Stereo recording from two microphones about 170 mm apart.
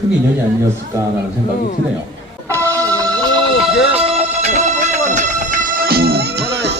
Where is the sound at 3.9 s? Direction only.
35° right (ahead or behind).